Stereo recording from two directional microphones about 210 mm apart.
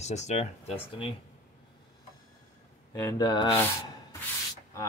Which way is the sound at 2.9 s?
20° left (ahead or behind).